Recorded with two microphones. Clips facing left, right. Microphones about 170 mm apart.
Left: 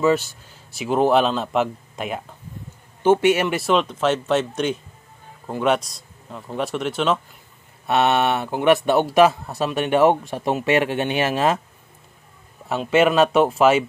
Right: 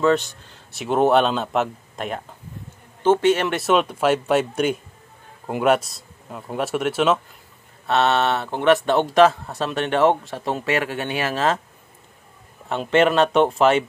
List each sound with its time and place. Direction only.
0.0 s a man's voice: 5° left (ahead or behind)
7.8 s a man's voice: 15° left (ahead or behind)
12.6 s a man's voice: 5° left (ahead or behind)